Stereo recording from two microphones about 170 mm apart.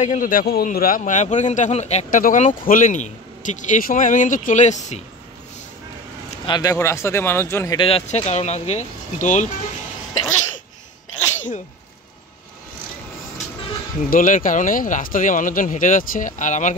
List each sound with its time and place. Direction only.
0.0 s a man's voice: 50° left (ahead or behind)
6.4 s speech: 25° left (ahead or behind)
7.8 s speech: 35° left (ahead or behind)
11.3 s sneeze: 45° left (ahead or behind)
14.1 s a man's voice: 50° left (ahead or behind)